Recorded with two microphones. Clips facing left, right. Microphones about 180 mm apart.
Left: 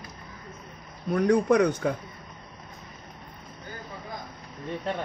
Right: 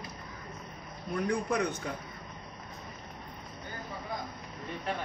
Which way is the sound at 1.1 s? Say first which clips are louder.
Left 9 dB; 80° left.